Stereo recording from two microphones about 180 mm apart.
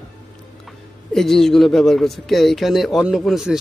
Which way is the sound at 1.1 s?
Centre (ahead or behind).